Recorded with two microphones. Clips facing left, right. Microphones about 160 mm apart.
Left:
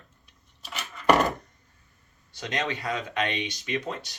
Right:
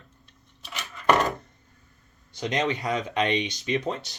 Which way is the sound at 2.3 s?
20° right (ahead or behind).